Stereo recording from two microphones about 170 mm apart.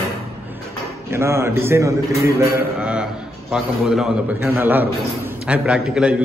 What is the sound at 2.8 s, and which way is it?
A man's voice, 5° right (ahead or behind).